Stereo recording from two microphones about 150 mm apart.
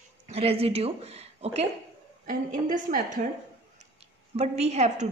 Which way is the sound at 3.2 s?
55° right (ahead or behind).